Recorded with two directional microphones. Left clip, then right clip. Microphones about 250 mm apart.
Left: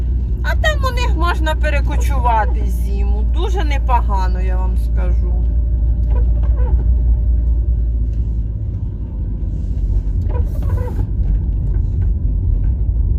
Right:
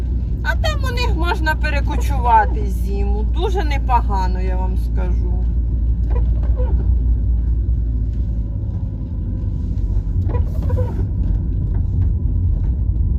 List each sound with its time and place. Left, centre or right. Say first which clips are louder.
0.4 s speech: left 4 dB; left